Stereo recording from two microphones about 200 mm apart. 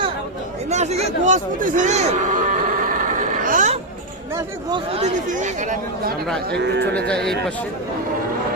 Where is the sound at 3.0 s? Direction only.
40° right (ahead or behind).